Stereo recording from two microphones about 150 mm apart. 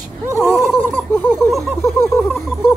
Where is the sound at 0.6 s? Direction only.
Centre (ahead or behind).